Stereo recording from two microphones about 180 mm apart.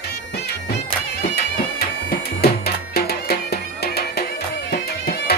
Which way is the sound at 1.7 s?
60° left (ahead or behind).